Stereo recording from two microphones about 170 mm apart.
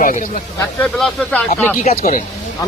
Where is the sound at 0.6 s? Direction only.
15° left (ahead or behind).